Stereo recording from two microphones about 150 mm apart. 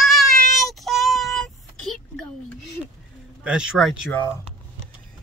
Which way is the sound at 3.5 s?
5° right (ahead or behind).